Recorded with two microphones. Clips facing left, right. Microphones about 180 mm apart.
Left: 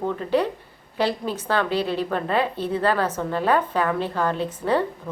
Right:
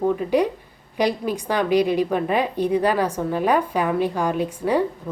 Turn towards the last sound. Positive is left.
turn(degrees=-10)  # may be behind; listen again after turning